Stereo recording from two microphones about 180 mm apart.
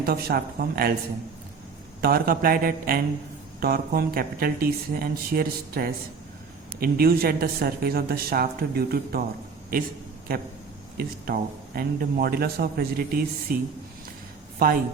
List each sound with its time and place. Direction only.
0.0 s a man's voice: 60° right (ahead or behind)
2.0 s a man's voice: 55° right (ahead or behind)
10.9 s a man's voice: 55° right (ahead or behind)